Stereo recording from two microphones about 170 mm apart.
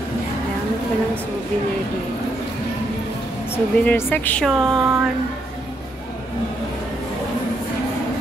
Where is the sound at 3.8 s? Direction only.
10° left (ahead or behind).